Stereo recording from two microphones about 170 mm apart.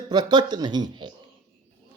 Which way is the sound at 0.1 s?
25° right (ahead or behind).